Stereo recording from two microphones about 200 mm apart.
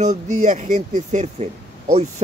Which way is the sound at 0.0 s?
35° right (ahead or behind).